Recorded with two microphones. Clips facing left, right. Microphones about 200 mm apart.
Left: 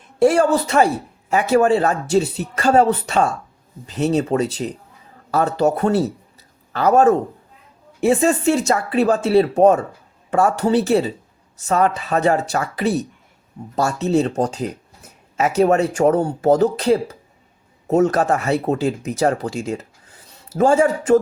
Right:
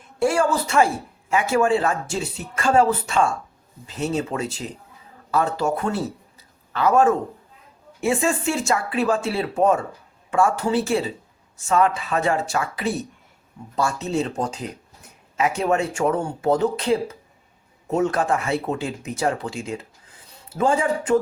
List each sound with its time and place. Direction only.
0.2 s a man's voice: 35° left (ahead or behind)